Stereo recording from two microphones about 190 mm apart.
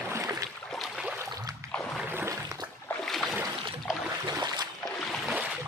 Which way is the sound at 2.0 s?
10° right (ahead or behind).